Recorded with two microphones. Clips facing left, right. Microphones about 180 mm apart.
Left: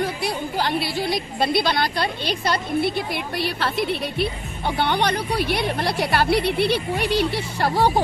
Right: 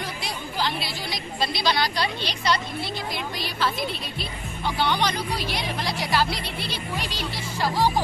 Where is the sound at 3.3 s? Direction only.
65° left (ahead or behind).